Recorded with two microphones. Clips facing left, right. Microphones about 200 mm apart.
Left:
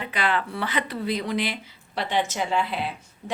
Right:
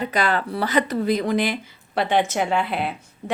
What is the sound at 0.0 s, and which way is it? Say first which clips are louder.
Speech: right 4 dB; 40° right (ahead or behind).